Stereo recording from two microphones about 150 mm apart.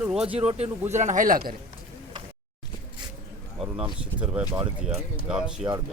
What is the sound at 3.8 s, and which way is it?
Speech, 10° right (ahead or behind).